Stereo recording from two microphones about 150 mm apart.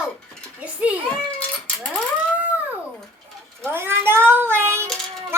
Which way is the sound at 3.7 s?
15° right (ahead or behind).